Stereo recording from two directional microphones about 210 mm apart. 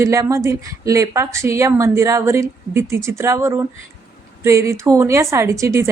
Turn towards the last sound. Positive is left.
turn(degrees=-15)  # may be behind; listen again after turning